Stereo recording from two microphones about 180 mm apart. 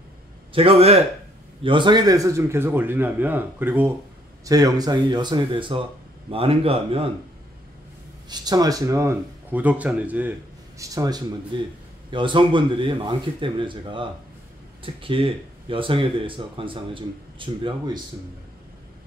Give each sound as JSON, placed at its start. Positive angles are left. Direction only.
{"t": 0.5, "sound": "a man's voice", "side_deg": -30}
{"t": 8.3, "sound": "a man's voice", "side_deg": -20}
{"t": 10.8, "sound": "speech", "side_deg": -20}